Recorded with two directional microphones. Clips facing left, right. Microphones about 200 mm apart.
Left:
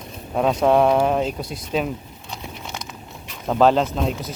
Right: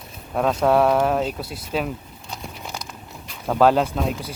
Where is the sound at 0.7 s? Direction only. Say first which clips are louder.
Left 1 dB; 5° right (ahead or behind).